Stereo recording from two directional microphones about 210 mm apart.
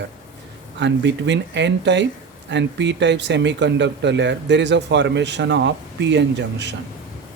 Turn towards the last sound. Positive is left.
turn(degrees=-55)  # may be behind; listen again after turning